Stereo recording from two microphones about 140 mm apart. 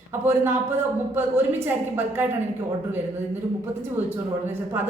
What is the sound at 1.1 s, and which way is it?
A woman's voice, 15° right (ahead or behind).